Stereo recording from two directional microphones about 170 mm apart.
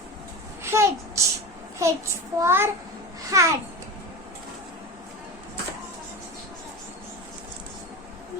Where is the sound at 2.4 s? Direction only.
15° right (ahead or behind).